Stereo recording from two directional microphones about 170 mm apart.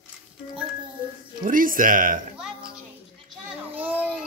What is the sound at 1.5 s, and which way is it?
Speech, 55° right (ahead or behind).